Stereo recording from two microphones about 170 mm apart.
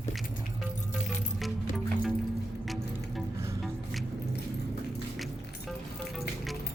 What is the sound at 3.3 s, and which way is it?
Music, 15° right (ahead or behind).